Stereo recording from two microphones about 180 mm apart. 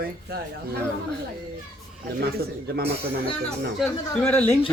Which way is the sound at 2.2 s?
65° right (ahead or behind).